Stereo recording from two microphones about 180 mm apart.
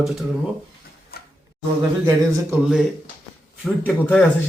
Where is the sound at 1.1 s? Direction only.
60° left (ahead or behind).